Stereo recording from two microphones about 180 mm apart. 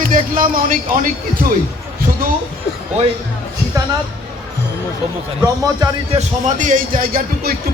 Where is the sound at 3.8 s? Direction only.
15° right (ahead or behind).